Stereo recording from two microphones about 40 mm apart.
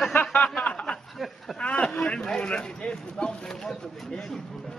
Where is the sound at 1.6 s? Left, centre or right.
Left.